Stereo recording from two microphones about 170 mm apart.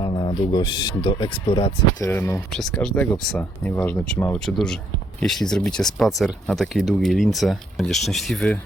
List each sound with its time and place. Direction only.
0.0 s speech: 25° left (ahead or behind)
2.0 s speech: 15° left (ahead or behind)
2.5 s speech: 5° left (ahead or behind)